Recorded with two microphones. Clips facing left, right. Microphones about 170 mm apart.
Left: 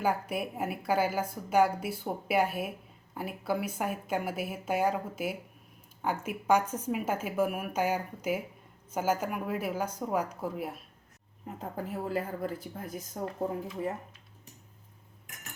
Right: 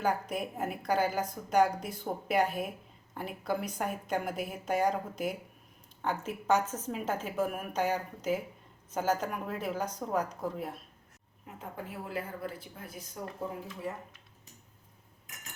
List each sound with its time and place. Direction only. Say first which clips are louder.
0.0 s a woman's voice: left 1 dB; 5° left (ahead or behind)
11.6 s speech: left 5 dB; 40° left (ahead or behind)